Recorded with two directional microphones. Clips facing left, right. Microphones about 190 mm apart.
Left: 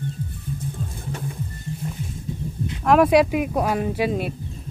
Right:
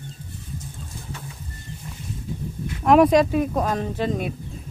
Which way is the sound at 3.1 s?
10° left (ahead or behind).